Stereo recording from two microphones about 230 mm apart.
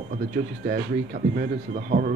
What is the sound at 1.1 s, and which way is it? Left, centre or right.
Speech, right.